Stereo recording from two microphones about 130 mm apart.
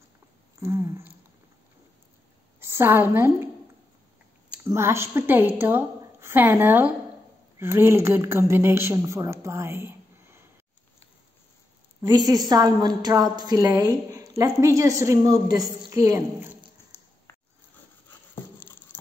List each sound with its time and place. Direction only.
0.6 s a woman's voice: 25° right (ahead or behind)
2.6 s a woman's voice: 20° right (ahead or behind)
4.6 s a woman's voice: 20° right (ahead or behind)
12.1 s a woman's voice: 30° right (ahead or behind)
16.9 s a sound: 20° left (ahead or behind)